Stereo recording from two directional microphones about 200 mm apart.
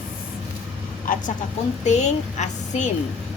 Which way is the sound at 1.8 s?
35° left (ahead or behind).